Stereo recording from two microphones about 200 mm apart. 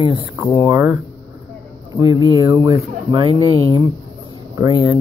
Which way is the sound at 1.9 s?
25° right (ahead or behind).